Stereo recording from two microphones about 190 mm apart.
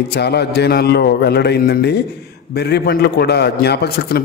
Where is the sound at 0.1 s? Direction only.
60° left (ahead or behind).